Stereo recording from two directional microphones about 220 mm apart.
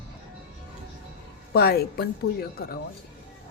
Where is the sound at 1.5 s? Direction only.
45° left (ahead or behind).